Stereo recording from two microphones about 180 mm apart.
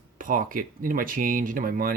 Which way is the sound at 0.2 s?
50° right (ahead or behind).